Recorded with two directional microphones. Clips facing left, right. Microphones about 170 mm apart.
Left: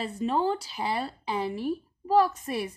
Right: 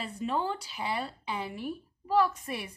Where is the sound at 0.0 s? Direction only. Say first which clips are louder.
Left 5 dB; 35° left (ahead or behind).